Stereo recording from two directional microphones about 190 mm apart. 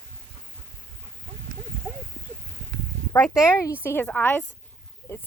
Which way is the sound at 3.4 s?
15° left (ahead or behind).